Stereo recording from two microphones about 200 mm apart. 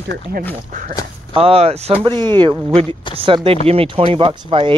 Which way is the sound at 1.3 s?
30° right (ahead or behind).